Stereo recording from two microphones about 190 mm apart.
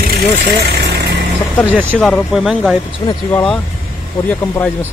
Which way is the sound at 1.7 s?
10° right (ahead or behind).